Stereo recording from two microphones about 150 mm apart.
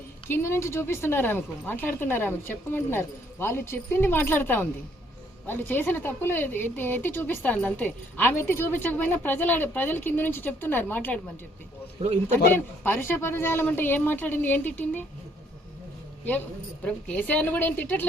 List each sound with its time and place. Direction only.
0.3 s a woman's voice: 15° left (ahead or behind)
11.9 s a man's voice: 45° right (ahead or behind)
12.5 s a woman's voice: 15° left (ahead or behind)
16.8 s a woman's voice: 10° left (ahead or behind)